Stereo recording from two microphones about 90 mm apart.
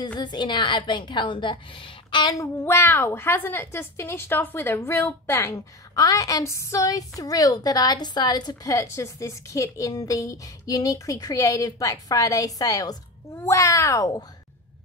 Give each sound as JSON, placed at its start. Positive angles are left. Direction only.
{"t": 0.2, "sound": "a woman's voice", "side_deg": 55}
{"t": 2.3, "sound": "a woman's voice", "side_deg": 30}
{"t": 8.6, "sound": "a woman's voice", "side_deg": 35}